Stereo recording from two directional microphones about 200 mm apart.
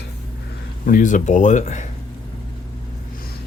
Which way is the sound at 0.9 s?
40° left (ahead or behind).